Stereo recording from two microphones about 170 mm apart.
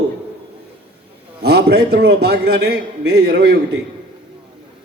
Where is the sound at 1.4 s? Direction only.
70° right (ahead or behind).